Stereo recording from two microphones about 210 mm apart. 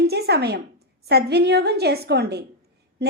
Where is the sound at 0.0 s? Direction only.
50° right (ahead or behind).